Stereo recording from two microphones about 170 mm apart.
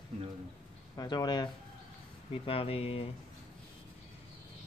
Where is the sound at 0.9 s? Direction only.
25° left (ahead or behind).